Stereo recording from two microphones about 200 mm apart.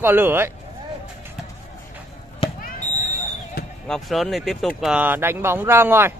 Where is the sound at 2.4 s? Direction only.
25° left (ahead or behind).